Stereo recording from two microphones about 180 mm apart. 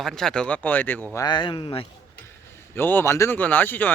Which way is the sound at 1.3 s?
25° left (ahead or behind).